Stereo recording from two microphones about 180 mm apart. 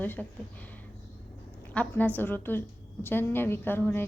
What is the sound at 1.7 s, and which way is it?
A woman's voice, 10° left (ahead or behind).